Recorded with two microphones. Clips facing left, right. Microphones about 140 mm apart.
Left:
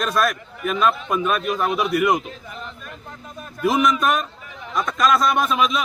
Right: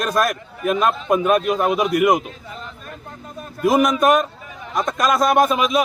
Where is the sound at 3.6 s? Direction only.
40° right (ahead or behind).